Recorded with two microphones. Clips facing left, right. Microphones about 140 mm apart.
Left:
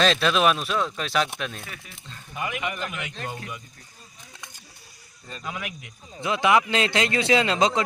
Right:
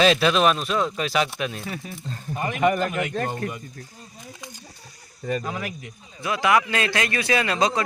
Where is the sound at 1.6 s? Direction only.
30° right (ahead or behind); by 3.6 s 50° right (ahead or behind).